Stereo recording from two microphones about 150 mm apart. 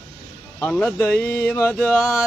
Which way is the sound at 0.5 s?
15° left (ahead or behind).